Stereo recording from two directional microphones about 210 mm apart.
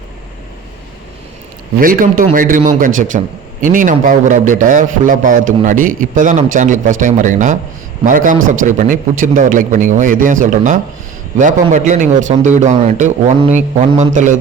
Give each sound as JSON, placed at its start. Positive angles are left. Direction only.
{"t": 1.8, "sound": "a man's voice", "side_deg": -40}